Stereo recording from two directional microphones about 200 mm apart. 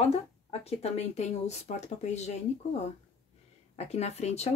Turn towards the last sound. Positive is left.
turn(degrees=30)  # may be behind; listen again after turning